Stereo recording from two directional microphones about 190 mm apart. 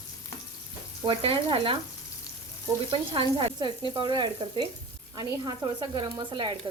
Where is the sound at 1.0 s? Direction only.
30° right (ahead or behind).